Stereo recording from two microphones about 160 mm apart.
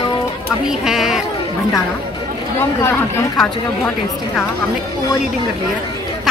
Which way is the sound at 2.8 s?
15° left (ahead or behind).